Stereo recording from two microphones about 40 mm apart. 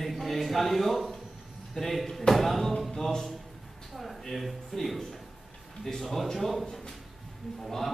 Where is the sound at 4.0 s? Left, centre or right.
Centre.